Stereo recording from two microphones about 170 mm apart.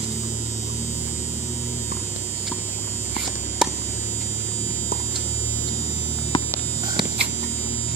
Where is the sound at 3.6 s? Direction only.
5° right (ahead or behind).